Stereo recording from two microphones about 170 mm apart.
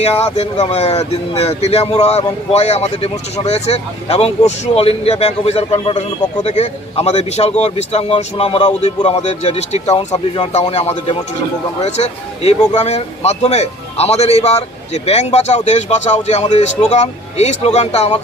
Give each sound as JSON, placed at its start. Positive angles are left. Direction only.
{"t": 0.0, "sound": "a man's voice", "side_deg": 35}